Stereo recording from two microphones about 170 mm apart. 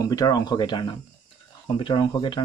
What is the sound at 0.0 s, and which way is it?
Speech, 20° left (ahead or behind).